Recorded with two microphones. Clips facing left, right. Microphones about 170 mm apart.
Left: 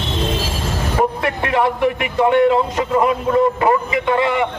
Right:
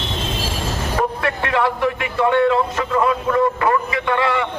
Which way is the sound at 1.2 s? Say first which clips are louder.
Left 2 dB; 20° left (ahead or behind).